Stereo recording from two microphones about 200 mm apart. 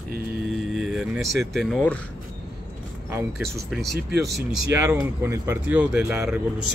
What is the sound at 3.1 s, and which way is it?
Speech, centre (ahead or behind).